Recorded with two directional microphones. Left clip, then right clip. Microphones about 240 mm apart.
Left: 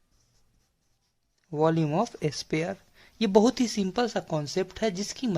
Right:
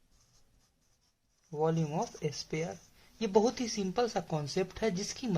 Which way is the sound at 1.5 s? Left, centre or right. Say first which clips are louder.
Left 7 dB; left.